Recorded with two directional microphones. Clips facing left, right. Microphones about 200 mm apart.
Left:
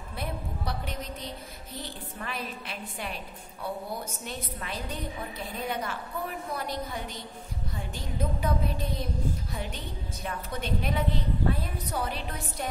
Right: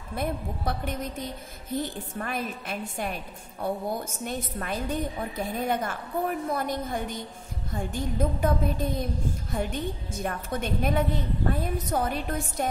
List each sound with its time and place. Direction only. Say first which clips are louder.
0.1 s a woman's voice: right 6 dB; 50° right (ahead or behind)